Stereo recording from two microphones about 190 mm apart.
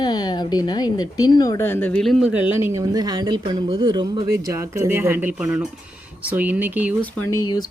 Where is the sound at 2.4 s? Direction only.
10° right (ahead or behind).